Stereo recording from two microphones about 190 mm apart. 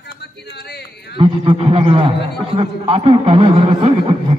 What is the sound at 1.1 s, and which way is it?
A man's voice, 30° right (ahead or behind).